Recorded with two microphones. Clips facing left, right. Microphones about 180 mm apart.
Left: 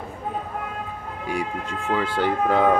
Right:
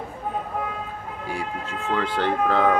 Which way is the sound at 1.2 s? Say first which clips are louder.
Left 3 dB; 15° left (ahead or behind).